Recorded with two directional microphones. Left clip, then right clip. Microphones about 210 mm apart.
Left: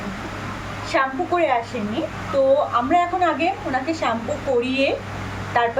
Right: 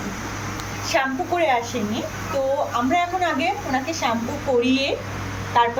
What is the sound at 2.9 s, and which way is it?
Speech, 15° left (ahead or behind).